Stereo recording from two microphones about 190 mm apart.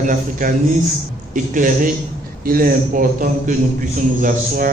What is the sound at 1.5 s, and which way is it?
A man's voice, 45° right (ahead or behind).